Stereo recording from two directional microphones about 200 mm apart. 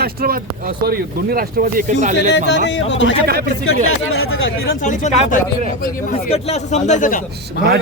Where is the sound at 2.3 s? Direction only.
60° left (ahead or behind).